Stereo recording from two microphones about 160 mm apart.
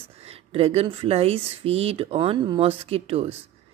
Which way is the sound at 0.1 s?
40° right (ahead or behind).